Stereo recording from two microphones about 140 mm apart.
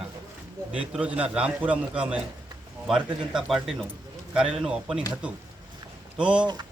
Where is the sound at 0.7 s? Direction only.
10° right (ahead or behind).